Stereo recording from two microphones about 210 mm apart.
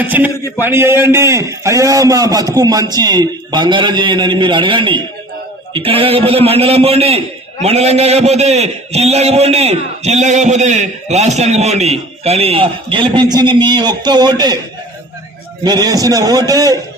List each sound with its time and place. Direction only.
0.0 s a man's voice: 10° right (ahead or behind)
15.6 s a man's voice: 20° right (ahead or behind)